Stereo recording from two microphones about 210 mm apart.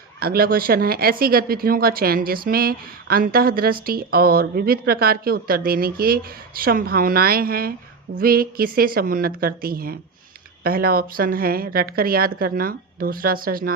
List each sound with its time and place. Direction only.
0.2 s speech: 45° right (ahead or behind)